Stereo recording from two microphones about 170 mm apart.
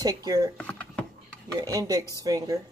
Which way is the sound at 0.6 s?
5° left (ahead or behind).